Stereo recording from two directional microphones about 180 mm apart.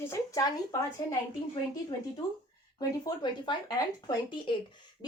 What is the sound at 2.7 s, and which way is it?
Speech, 25° left (ahead or behind).